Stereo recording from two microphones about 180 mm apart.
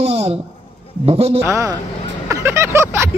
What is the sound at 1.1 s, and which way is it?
Speech, 35° right (ahead or behind).